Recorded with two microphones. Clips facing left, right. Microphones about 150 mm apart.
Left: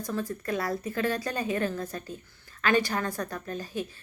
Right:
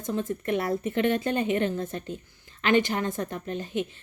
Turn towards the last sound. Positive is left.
turn(degrees=-20)  # may be behind; listen again after turning